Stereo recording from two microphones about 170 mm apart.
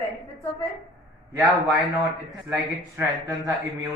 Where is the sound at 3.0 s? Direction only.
20° right (ahead or behind).